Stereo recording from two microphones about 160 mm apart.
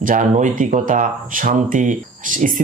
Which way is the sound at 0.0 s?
50° right (ahead or behind).